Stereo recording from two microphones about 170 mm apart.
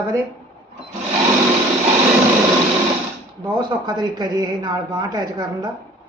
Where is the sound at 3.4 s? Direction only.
25° right (ahead or behind).